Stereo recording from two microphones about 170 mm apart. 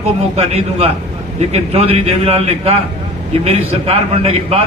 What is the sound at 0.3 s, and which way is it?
A man's voice, 40° right (ahead or behind).